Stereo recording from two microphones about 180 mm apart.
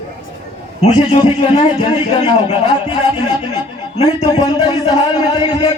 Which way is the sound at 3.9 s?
35° left (ahead or behind).